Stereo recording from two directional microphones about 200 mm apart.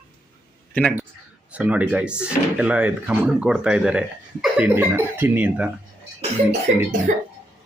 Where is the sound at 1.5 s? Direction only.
5° right (ahead or behind).